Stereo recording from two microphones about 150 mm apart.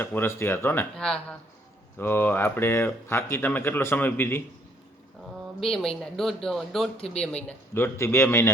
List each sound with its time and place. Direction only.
0.0 s speech: 15° left (ahead or behind)
5.5 s speech: 5° left (ahead or behind)
6.9 s speech: 40° left (ahead or behind)
7.2 s speech: 5° left (ahead or behind)